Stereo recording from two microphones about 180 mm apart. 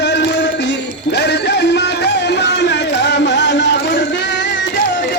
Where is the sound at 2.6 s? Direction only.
75° left (ahead or behind).